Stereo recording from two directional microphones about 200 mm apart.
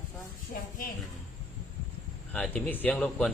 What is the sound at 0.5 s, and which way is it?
Speech, 40° left (ahead or behind).